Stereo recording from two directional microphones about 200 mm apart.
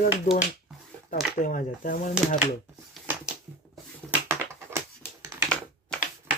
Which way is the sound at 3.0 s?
10° right (ahead or behind).